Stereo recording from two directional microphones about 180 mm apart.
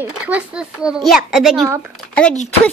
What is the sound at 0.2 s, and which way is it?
A woman's voice, 5° right (ahead or behind).